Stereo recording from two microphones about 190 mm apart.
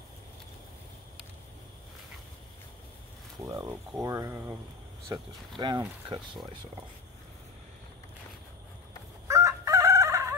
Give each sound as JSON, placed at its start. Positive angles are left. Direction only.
{"t": 3.4, "sound": "speech", "side_deg": -20}
{"t": 9.3, "sound": "chicken", "side_deg": -15}